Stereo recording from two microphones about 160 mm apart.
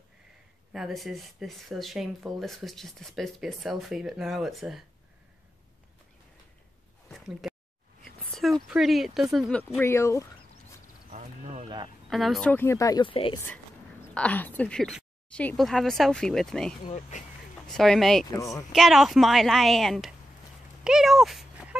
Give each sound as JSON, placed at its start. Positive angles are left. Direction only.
{"t": 0.7, "sound": "speech", "side_deg": 0}
{"t": 7.1, "sound": "a sound", "side_deg": 0}
{"t": 8.0, "sound": "speech", "side_deg": 0}
{"t": 9.8, "sound": "a woman's voice", "side_deg": 15}
{"t": 11.1, "sound": "a sound", "side_deg": -50}
{"t": 12.1, "sound": "a woman's voice", "side_deg": 0}
{"t": 14.1, "sound": "a woman's voice", "side_deg": 10}
{"t": 16.8, "sound": "speech", "side_deg": 50}
{"t": 17.6, "sound": "speech", "side_deg": 5}
{"t": 20.8, "sound": "a sound", "side_deg": -5}